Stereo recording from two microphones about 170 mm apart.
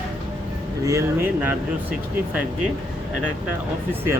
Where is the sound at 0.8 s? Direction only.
15° right (ahead or behind).